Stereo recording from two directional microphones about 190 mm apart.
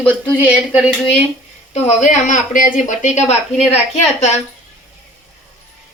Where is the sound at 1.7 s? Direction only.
40° left (ahead or behind).